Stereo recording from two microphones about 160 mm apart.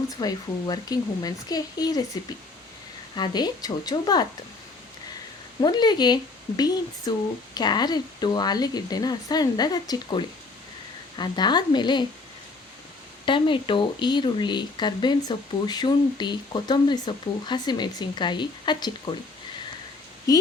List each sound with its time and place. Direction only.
0.2 s speech: 25° left (ahead or behind)
3.2 s speech: 25° left (ahead or behind)
5.6 s speech: 25° left (ahead or behind)
13.2 s speech: 30° left (ahead or behind)
20.3 s speech: 25° left (ahead or behind)